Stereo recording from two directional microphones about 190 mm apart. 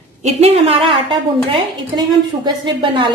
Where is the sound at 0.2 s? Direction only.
35° right (ahead or behind).